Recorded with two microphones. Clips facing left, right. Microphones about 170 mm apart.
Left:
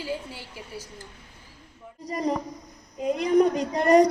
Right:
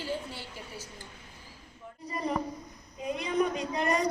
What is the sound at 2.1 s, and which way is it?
A woman's voice, 40° left (ahead or behind).